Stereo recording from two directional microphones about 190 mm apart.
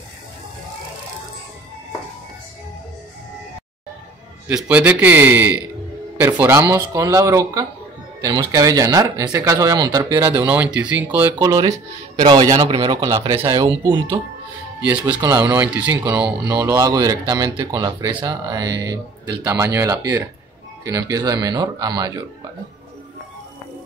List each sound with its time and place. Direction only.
4.5 s speech: 5° right (ahead or behind)
11.3 s speech: 20° right (ahead or behind)
14.8 s speech: 5° right (ahead or behind)
15.0 s speech: 25° right (ahead or behind)
15.4 s speech: 10° right (ahead or behind)
16.4 s speech: 15° right (ahead or behind)